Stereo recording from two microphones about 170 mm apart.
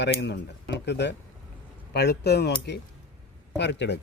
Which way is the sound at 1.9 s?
75° left (ahead or behind).